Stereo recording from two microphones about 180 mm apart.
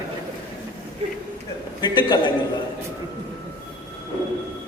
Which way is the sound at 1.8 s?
25° left (ahead or behind).